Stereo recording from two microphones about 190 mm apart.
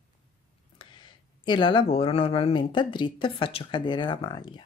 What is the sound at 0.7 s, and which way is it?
Speech, 25° left (ahead or behind).